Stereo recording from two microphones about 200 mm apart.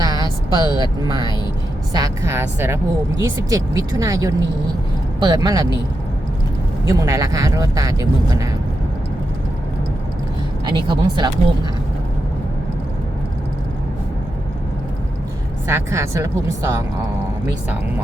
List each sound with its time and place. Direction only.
0.0 s speech: 20° right (ahead or behind)
6.8 s speech: 15° right (ahead or behind)
10.7 s speech: 20° right (ahead or behind)
15.6 s speech: 15° right (ahead or behind)